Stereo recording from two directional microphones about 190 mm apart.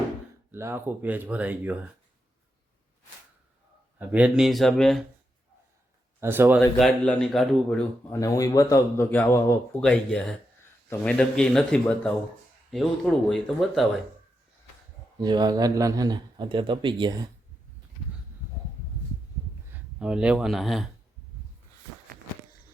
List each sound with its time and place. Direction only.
0.5 s speech: 10° right (ahead or behind)
3.9 s speech: 5° right (ahead or behind)
6.1 s speech: 15° right (ahead or behind)
6.7 s speech: 5° left (ahead or behind)
8.1 s speech: 15° left (ahead or behind)
9.8 s speech: 5° left (ahead or behind)
15.2 s a man's voice: 20° right (ahead or behind)
19.7 s speech: 5° right (ahead or behind)